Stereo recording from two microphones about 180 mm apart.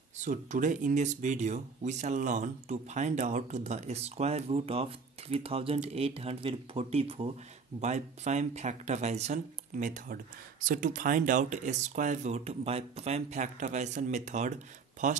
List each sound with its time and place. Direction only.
0.2 s speech: 45° right (ahead or behind)